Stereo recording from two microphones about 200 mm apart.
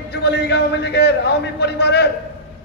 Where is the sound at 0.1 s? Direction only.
55° left (ahead or behind).